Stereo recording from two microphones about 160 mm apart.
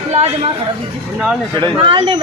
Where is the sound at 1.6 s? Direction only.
30° right (ahead or behind).